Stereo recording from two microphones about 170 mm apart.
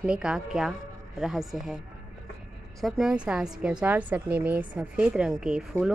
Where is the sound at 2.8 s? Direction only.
5° right (ahead or behind).